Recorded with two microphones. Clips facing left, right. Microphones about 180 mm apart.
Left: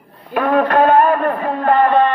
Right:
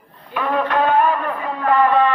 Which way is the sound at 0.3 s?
50° left (ahead or behind).